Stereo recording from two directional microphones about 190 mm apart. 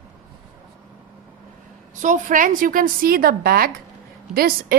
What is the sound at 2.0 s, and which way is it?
A woman's voice, 40° right (ahead or behind).